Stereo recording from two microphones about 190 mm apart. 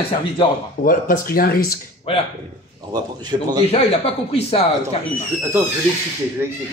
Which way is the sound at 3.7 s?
30° left (ahead or behind).